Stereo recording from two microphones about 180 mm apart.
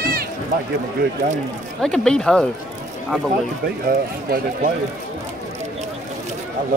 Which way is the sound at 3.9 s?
55° right (ahead or behind).